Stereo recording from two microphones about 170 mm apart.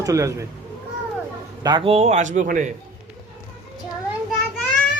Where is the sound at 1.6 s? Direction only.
25° right (ahead or behind); by 2.7 s 50° right (ahead or behind).